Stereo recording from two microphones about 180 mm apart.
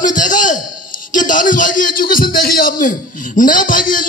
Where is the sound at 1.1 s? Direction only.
45° left (ahead or behind).